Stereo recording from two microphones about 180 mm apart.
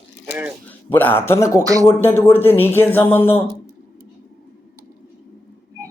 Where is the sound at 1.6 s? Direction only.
20° right (ahead or behind).